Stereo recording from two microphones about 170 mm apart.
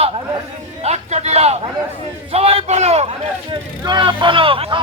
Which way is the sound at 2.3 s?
35° right (ahead or behind).